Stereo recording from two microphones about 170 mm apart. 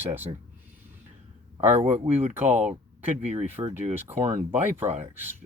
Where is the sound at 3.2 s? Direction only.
40° right (ahead or behind).